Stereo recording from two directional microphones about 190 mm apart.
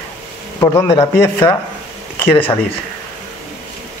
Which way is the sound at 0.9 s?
30° left (ahead or behind).